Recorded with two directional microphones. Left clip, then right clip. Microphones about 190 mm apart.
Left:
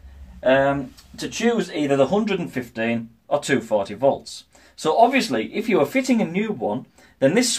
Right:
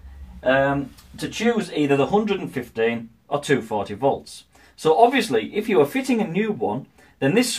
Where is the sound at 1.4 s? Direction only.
45° left (ahead or behind).